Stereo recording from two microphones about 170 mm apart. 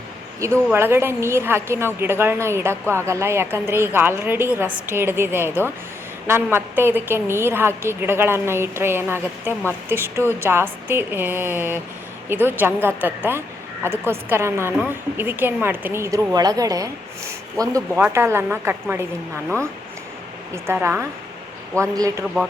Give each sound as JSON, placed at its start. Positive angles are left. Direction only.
{"t": 0.3, "sound": "a woman's voice", "side_deg": -15}
{"t": 20.7, "sound": "a woman's voice", "side_deg": -10}